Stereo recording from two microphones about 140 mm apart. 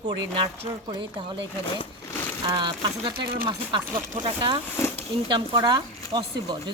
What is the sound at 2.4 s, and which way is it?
Speech, 30° right (ahead or behind).